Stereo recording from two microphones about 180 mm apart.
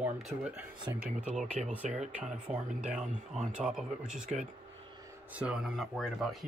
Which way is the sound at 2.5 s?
5° right (ahead or behind).